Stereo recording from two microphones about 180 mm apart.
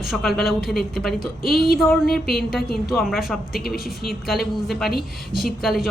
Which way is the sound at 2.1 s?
60° left (ahead or behind).